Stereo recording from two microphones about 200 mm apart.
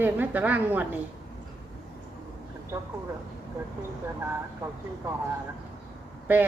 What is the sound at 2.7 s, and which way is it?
Speech, 15° right (ahead or behind).